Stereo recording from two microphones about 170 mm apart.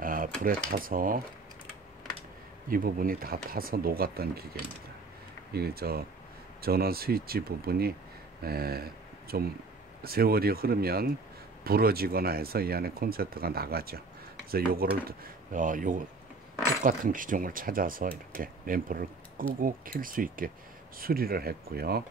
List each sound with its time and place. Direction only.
0.0 s dishes: 55° right (ahead or behind)
0.7 s speech: 55° right (ahead or behind)
2.7 s speech: 55° right (ahead or behind)
5.5 s speech: 65° right (ahead or behind)